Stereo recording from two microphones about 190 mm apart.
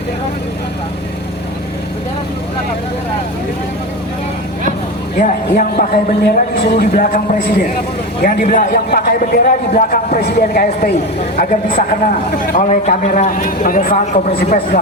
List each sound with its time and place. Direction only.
5.2 s a man's voice: 50° left (ahead or behind)